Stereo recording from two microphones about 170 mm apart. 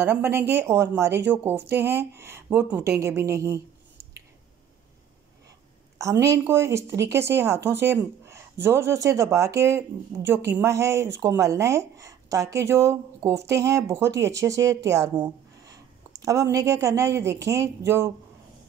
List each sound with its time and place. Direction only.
0.0 s speech: 15° right (ahead or behind)
5.9 s speech: 15° right (ahead or behind)